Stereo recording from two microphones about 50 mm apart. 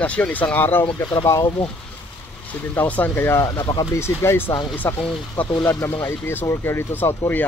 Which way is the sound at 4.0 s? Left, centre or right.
Left.